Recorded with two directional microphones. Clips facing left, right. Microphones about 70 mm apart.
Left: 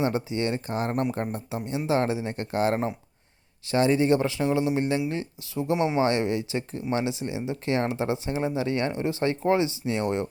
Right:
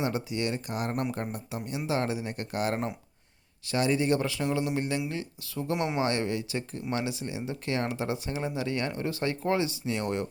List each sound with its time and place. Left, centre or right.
0.0 s speech: left